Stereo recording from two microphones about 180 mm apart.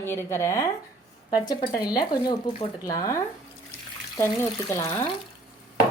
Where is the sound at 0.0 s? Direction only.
15° left (ahead or behind).